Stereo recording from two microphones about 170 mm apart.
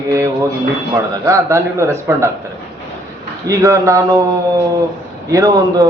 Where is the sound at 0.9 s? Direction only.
15° right (ahead or behind).